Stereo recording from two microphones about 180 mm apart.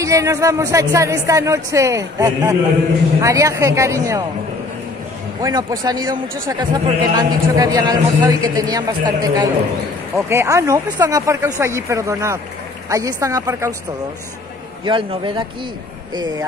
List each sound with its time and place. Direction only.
0.0 s speech: 20° right (ahead or behind)
5.4 s a man's voice: 20° right (ahead or behind)
14.9 s a man's voice: 25° right (ahead or behind)